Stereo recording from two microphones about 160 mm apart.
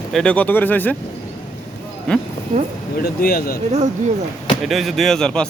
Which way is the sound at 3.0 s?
70° left (ahead or behind).